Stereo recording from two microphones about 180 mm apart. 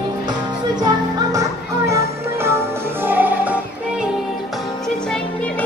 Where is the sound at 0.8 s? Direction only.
20° right (ahead or behind).